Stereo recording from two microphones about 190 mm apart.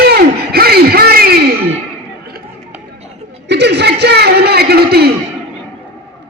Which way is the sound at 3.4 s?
65° right (ahead or behind).